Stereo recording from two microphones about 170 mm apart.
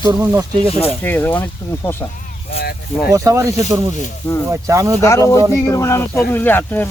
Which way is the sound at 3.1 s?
20° right (ahead or behind).